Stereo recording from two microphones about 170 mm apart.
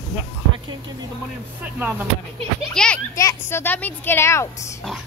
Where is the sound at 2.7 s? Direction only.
5° left (ahead or behind).